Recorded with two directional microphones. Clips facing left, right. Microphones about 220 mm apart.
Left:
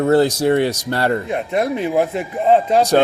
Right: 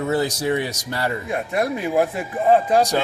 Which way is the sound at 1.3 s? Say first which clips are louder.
Left 3 dB; 20° left (ahead or behind).